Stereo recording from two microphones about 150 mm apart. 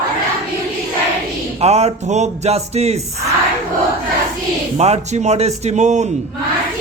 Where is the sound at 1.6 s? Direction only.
45° right (ahead or behind).